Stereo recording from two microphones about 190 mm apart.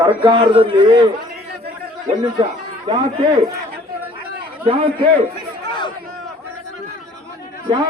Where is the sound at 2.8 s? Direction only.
25° right (ahead or behind).